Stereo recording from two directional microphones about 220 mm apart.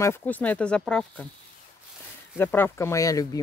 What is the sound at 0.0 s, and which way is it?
Speech, 10° left (ahead or behind).